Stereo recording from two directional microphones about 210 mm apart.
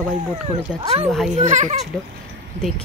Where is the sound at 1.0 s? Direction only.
Centre (ahead or behind).